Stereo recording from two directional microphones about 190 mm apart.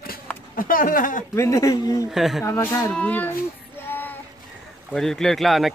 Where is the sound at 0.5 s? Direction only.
45° left (ahead or behind).